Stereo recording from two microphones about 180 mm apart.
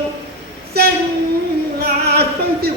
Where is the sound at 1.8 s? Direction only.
60° right (ahead or behind).